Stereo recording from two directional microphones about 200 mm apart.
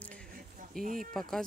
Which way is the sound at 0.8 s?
45° right (ahead or behind).